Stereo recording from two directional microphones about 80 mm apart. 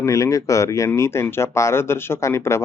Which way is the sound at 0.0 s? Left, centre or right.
Left.